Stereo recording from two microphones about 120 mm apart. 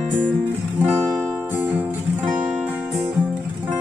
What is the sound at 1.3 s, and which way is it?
Music, 15° right (ahead or behind).